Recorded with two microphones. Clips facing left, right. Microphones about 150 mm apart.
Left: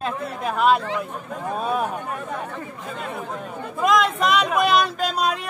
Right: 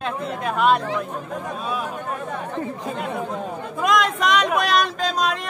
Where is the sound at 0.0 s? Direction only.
Centre (ahead or behind).